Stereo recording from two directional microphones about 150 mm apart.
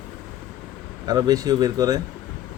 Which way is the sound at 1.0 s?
25° right (ahead or behind).